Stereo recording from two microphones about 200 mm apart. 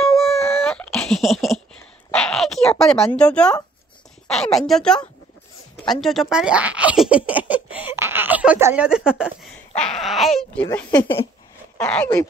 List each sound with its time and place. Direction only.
0.0 s wail: centre (ahead or behind)
0.7 s a sound: 5° left (ahead or behind)
4.3 s speech: centre (ahead or behind)
7.9 s a sound: 10° right (ahead or behind)
9.8 s speech: centre (ahead or behind)
10.7 s speech: 15° left (ahead or behind)
11.8 s speech: 5° left (ahead or behind)